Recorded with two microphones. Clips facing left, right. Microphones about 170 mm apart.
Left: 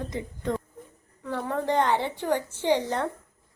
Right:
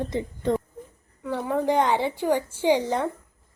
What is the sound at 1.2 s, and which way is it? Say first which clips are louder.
A woman's voice: right 4 dB; 10° right (ahead or behind).